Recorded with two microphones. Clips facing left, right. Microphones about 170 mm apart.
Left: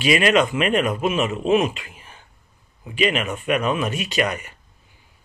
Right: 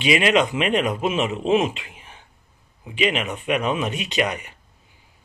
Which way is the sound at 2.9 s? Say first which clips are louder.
Left 1 dB; 20° right (ahead or behind).